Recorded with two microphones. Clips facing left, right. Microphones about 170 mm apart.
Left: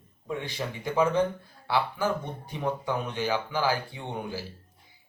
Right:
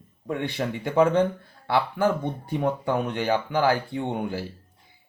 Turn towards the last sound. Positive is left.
turn(degrees=-55)  # may be behind; listen again after turning